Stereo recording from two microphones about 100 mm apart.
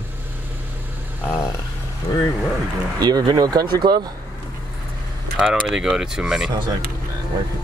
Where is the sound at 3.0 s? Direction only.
45° right (ahead or behind).